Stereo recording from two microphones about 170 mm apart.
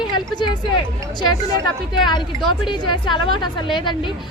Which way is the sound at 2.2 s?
Centre (ahead or behind).